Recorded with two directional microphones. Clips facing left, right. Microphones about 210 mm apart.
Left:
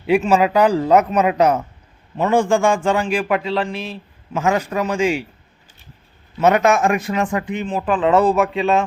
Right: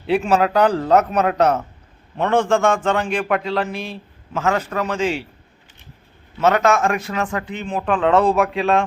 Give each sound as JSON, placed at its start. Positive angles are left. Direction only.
{"t": 0.1, "sound": "a man's voice", "side_deg": 10}
{"t": 4.4, "sound": "a man's voice", "side_deg": 15}
{"t": 6.4, "sound": "a man's voice", "side_deg": 15}
{"t": 7.6, "sound": "speech", "side_deg": 5}